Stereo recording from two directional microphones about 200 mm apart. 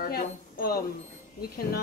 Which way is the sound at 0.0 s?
50° left (ahead or behind).